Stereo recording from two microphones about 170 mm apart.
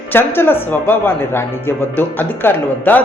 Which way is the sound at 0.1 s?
10° left (ahead or behind).